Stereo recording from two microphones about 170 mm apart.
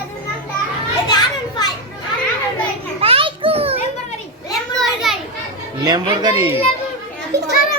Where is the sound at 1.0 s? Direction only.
25° left (ahead or behind).